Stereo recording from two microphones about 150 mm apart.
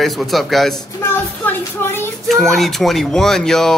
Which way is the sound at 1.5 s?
15° left (ahead or behind).